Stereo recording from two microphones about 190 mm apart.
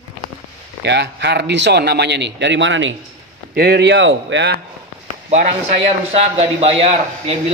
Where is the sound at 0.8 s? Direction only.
65° right (ahead or behind).